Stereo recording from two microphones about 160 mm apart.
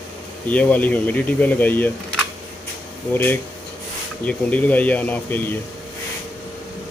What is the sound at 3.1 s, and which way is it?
Speech, 15° left (ahead or behind).